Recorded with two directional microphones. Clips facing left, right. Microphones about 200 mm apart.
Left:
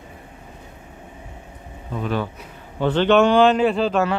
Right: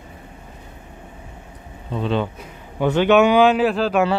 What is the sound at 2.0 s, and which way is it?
Speech, 25° right (ahead or behind).